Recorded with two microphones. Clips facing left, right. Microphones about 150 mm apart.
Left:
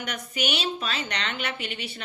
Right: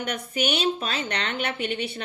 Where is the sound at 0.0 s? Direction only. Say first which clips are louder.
Right 3 dB; 50° right (ahead or behind).